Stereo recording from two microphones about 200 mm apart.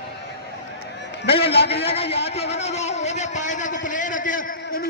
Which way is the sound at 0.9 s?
60° left (ahead or behind).